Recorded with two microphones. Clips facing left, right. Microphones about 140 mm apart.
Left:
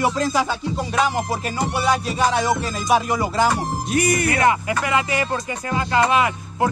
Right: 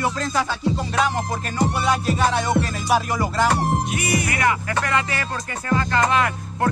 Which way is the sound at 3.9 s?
45° left (ahead or behind).